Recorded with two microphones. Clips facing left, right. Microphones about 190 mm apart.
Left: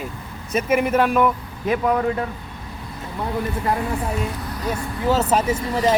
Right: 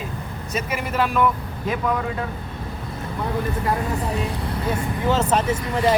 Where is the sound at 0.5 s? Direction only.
50° left (ahead or behind).